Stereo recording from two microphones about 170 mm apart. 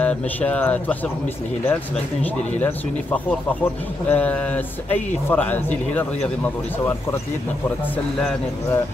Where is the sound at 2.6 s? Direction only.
10° left (ahead or behind).